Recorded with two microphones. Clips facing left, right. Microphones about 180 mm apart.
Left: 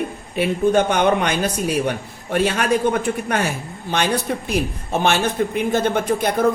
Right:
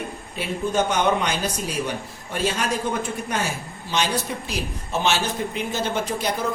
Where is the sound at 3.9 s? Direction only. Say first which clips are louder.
Left 4 dB; 55° left (ahead or behind).